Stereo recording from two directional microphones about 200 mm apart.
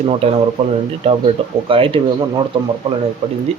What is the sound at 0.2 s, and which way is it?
Speech, 30° right (ahead or behind).